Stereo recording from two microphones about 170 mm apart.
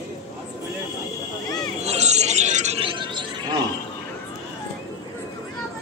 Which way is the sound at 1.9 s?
40° right (ahead or behind).